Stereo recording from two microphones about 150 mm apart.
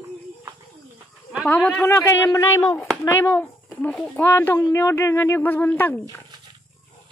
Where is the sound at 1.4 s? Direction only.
10° left (ahead or behind).